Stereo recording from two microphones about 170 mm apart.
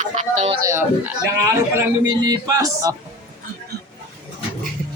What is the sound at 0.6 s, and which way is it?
Speech, 15° right (ahead or behind).